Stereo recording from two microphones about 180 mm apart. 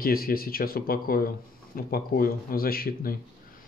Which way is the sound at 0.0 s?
55° left (ahead or behind).